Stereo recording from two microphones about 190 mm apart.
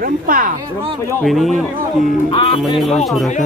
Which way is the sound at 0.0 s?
50° right (ahead or behind).